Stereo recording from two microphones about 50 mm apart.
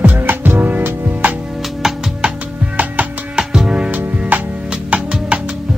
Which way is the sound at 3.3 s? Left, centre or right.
Centre.